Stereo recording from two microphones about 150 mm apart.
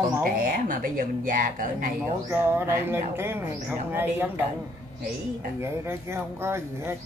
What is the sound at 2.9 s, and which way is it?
Speech, 15° right (ahead or behind).